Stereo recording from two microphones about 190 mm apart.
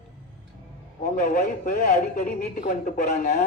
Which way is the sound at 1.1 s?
40° left (ahead or behind).